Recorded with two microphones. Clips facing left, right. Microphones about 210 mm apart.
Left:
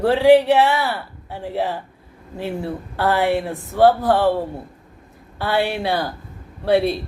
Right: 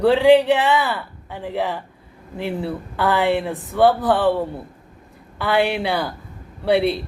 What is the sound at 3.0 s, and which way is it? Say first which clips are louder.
Speech: even; 15° right (ahead or behind).